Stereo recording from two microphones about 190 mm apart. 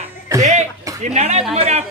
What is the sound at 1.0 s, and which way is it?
Speech, 35° right (ahead or behind).